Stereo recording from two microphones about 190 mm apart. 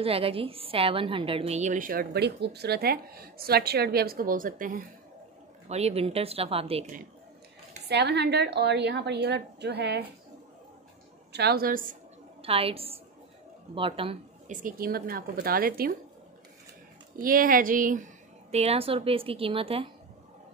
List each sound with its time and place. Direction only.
0.0 s a woman's voice: 30° right (ahead or behind); by 4.8 s 45° right (ahead or behind)
5.7 s a woman's voice: 35° right (ahead or behind)
7.9 s a woman's voice: 60° right (ahead or behind)
11.3 s a woman's voice: 55° right (ahead or behind)
12.4 s a woman's voice: 30° right (ahead or behind)
14.5 s a woman's voice: 45° right (ahead or behind)
17.2 s a woman's voice: 45° right (ahead or behind); by 19.9 s 30° right (ahead or behind)